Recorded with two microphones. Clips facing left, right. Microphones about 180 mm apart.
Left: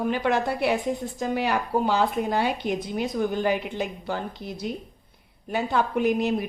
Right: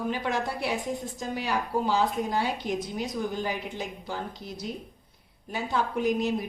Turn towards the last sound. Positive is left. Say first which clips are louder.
# left 3 dB
turn(degrees=60)  # may be behind; listen again after turning